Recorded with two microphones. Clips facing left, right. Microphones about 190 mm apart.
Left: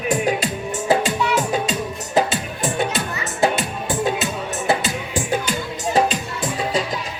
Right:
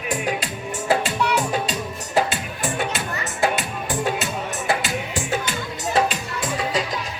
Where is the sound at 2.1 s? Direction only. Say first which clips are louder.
Left 2 dB; 20° left (ahead or behind).